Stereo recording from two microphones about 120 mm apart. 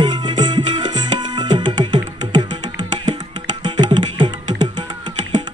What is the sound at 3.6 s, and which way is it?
Music, 40° right (ahead or behind).